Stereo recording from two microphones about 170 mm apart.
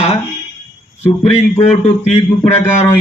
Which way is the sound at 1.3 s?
40° left (ahead or behind).